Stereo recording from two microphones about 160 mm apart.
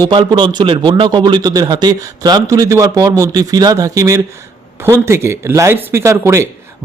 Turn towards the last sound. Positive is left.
turn(degrees=-15)  # may be behind; listen again after turning